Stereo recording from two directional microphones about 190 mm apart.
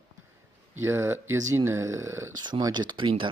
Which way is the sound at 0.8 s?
15° right (ahead or behind).